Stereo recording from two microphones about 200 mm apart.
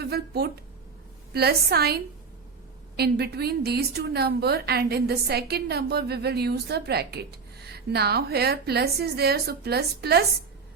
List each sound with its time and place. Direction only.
0.0 s a woman's voice: 55° right (ahead or behind)